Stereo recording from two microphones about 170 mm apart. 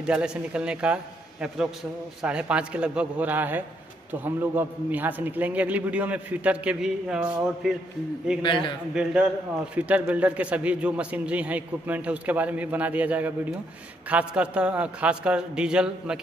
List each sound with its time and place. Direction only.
0.0 s speech: 5° right (ahead or behind)
2.2 s a man's voice: 5° right (ahead or behind)
8.4 s a man's voice: 30° left (ahead or behind)
8.9 s a man's voice: 5° right (ahead or behind)